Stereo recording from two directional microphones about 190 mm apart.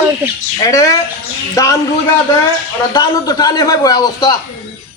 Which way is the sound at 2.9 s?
20° left (ahead or behind).